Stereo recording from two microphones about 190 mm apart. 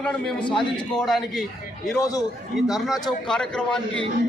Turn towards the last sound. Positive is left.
turn(degrees=5)  # may be behind; listen again after turning